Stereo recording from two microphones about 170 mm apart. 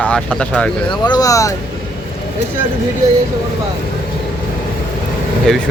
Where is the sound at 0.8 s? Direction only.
25° left (ahead or behind).